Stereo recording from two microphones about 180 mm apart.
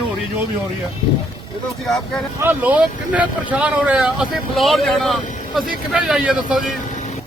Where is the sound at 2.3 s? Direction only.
10° right (ahead or behind).